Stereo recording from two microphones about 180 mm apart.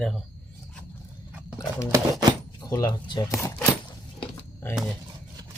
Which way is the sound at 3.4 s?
10° left (ahead or behind).